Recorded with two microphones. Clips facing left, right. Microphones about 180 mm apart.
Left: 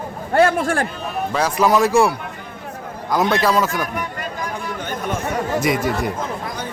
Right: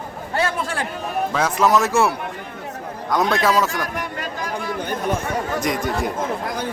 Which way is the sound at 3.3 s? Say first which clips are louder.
Left 1 dB; centre (ahead or behind).